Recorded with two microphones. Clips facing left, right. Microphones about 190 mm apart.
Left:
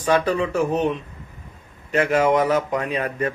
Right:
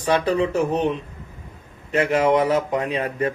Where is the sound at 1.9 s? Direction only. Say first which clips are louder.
Even; 30° right (ahead or behind).